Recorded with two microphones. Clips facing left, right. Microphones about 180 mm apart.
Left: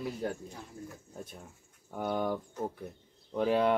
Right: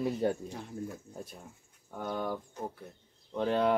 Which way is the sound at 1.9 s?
10° left (ahead or behind).